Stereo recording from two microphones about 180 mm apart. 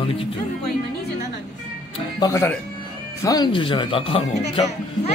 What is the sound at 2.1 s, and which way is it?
Speech, 15° left (ahead or behind).